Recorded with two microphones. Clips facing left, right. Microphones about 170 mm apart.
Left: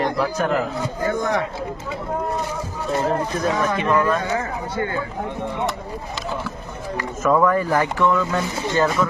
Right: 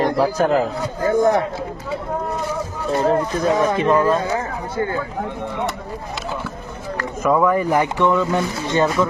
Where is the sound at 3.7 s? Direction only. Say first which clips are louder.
Right 3 dB; 30° right (ahead or behind).